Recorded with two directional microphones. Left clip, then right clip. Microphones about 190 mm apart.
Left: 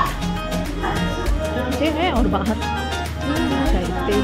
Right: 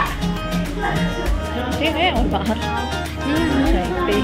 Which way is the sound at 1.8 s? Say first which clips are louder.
Right 2 dB; 15° left (ahead or behind).